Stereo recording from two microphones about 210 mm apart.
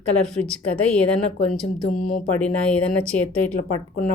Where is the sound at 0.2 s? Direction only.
5° left (ahead or behind).